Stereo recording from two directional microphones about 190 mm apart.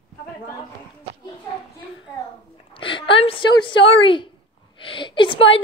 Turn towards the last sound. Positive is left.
turn(degrees=25)  # may be behind; listen again after turning